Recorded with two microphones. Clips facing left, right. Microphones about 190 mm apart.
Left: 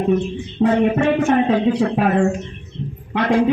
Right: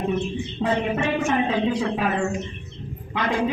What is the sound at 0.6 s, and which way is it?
Speech, 55° left (ahead or behind).